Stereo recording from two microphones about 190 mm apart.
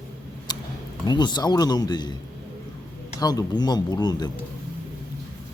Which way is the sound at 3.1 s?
20° left (ahead or behind).